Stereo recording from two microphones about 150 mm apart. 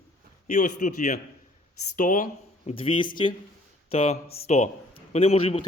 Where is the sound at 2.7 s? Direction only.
35° left (ahead or behind).